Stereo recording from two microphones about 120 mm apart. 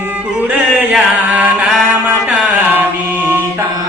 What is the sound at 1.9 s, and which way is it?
Mantra, 10° right (ahead or behind).